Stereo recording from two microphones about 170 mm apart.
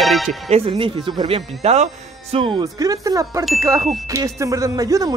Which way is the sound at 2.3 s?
30° right (ahead or behind).